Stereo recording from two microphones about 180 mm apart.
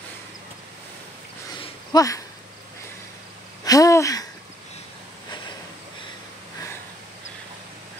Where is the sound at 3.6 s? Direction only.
20° left (ahead or behind).